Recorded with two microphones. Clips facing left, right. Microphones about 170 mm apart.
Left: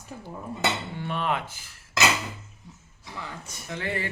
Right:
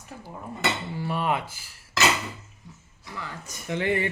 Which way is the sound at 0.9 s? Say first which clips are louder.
Right 2 dB; 5° right (ahead or behind).